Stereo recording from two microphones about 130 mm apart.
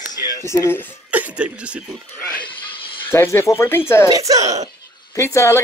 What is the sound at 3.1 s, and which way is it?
Speech, 20° left (ahead or behind).